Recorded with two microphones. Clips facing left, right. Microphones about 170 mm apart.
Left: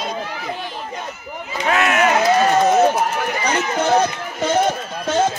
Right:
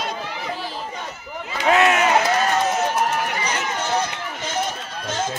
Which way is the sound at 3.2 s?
55° left (ahead or behind).